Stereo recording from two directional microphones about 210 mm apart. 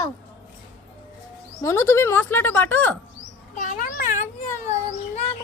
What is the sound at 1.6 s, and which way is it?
Speech, 15° left (ahead or behind).